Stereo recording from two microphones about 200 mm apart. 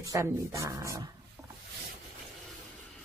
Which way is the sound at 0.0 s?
15° right (ahead or behind).